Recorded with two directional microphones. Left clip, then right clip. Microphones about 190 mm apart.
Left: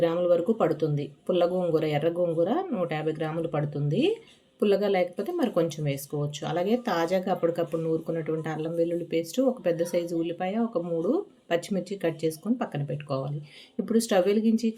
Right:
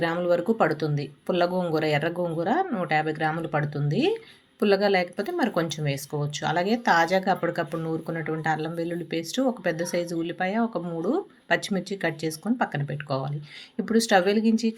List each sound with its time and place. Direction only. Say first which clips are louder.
0.0 s speech: left 1 dB; 20° right (ahead or behind)